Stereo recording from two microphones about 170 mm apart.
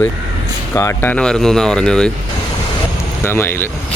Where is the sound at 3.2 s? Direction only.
15° left (ahead or behind).